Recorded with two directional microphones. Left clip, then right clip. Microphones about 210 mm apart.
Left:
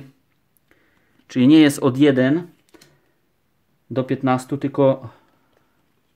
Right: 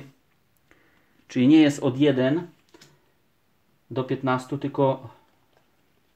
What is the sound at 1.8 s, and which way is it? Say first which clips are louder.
Speech: left 5 dB; 40° left (ahead or behind).